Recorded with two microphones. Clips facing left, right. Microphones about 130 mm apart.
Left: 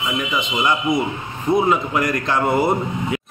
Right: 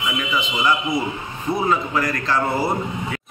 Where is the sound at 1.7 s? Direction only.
15° left (ahead or behind).